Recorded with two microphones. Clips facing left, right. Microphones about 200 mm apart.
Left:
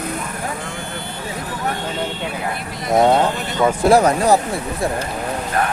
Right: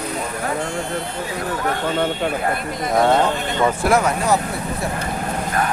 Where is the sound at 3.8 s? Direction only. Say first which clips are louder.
Left 7 dB; 35° left (ahead or behind).